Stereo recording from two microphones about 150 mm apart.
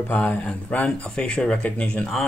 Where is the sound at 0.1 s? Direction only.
10° left (ahead or behind).